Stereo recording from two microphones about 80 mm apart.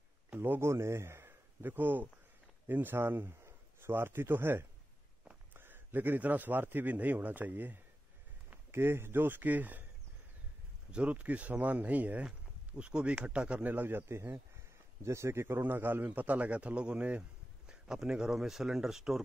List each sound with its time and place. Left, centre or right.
0.4 s a man's voice: right
10.9 s speech: centre